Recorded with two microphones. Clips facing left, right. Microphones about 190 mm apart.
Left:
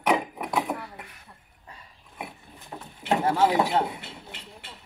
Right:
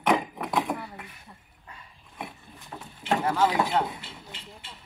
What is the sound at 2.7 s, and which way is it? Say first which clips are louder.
Boat: left 2 dB; 15° left (ahead or behind).